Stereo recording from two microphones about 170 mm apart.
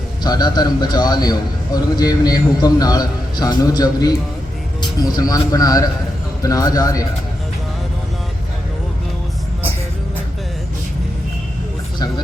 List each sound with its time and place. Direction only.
0.2 s a man's voice: 25° left (ahead or behind)